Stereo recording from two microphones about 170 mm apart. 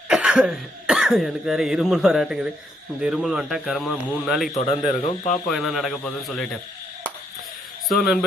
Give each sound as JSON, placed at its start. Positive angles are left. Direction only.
{"t": 0.1, "sound": "a man's voice", "side_deg": -5}
{"t": 4.5, "sound": "speech", "side_deg": 35}
{"t": 5.5, "sound": "a man's voice", "side_deg": 0}
{"t": 7.9, "sound": "a man's voice", "side_deg": 0}